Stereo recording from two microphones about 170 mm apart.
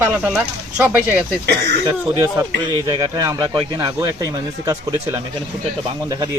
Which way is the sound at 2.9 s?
25° right (ahead or behind).